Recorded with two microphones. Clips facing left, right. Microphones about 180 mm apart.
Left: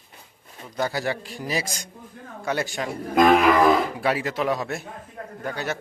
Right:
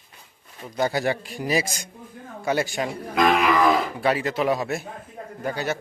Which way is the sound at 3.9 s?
Centre (ahead or behind).